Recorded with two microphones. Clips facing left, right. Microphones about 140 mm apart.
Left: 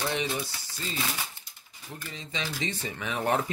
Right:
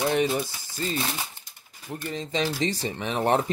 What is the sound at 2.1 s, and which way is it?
Speech, 40° right (ahead or behind).